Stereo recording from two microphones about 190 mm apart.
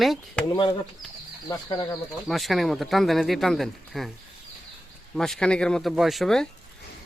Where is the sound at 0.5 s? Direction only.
25° left (ahead or behind).